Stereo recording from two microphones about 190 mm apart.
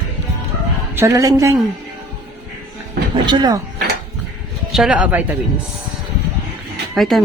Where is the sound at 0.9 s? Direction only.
15° right (ahead or behind).